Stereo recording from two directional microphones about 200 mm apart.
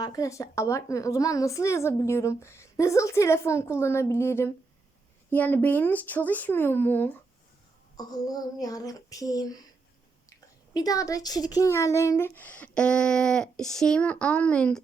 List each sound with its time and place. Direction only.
0.0 s a woman's voice: 15° left (ahead or behind)
10.8 s a woman's voice: 15° left (ahead or behind)